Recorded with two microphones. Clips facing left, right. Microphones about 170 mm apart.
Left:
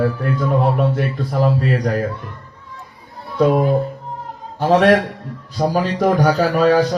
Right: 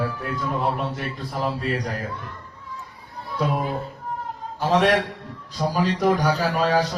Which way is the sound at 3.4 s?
50° left (ahead or behind).